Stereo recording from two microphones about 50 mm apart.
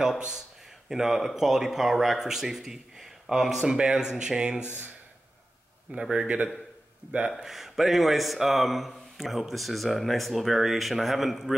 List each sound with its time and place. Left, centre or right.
0.8 s speech: centre
4.6 s speech: left
5.9 s speech: centre
6.2 s a man's voice: right
7.4 s speech: centre